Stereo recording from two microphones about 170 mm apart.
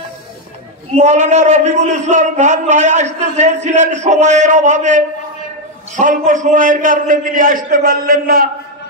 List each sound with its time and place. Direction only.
0.9 s a man's voice: 45° right (ahead or behind)